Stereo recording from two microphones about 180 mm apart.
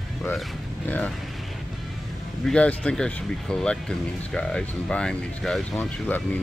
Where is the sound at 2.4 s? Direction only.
5° left (ahead or behind).